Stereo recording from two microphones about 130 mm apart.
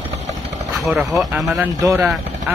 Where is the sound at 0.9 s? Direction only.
5° right (ahead or behind).